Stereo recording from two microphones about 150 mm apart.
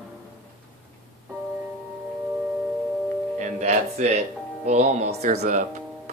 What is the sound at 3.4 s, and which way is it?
Music, 50° right (ahead or behind).